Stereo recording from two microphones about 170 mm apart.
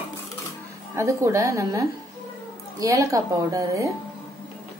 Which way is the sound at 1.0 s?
20° right (ahead or behind).